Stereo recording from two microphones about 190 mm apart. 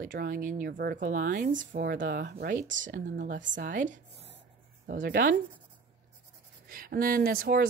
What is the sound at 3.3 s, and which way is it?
Speech, 70° right (ahead or behind).